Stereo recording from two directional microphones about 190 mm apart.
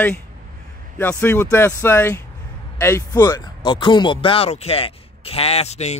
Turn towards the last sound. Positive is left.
turn(degrees=35)  # may be behind; listen again after turning